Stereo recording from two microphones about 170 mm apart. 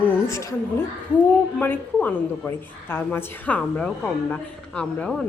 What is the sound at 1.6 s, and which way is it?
A woman's voice, 10° left (ahead or behind).